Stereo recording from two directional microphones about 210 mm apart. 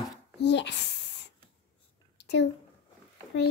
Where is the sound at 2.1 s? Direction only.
55° left (ahead or behind).